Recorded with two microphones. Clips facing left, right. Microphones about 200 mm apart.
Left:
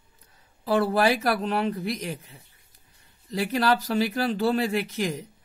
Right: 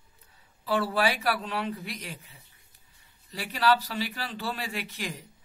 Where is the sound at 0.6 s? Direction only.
40° left (ahead or behind).